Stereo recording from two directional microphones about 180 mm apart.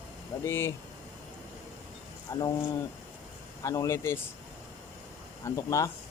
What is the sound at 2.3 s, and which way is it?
Speech, 20° left (ahead or behind).